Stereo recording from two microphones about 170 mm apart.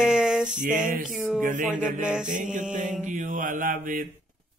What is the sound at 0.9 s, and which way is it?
Speech, 50° right (ahead or behind).